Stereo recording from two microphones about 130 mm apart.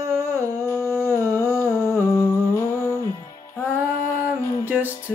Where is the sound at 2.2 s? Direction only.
25° left (ahead or behind).